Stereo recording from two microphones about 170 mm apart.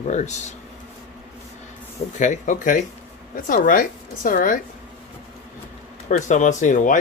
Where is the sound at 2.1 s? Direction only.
45° left (ahead or behind).